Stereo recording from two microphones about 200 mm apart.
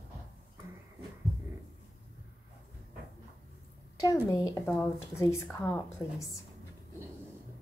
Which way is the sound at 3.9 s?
15° left (ahead or behind).